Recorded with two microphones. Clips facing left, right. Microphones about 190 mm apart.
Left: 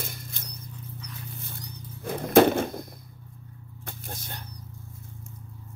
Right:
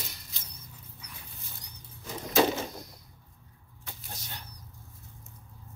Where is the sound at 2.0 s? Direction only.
55° left (ahead or behind).